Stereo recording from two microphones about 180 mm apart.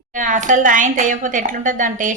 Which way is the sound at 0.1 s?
45° right (ahead or behind).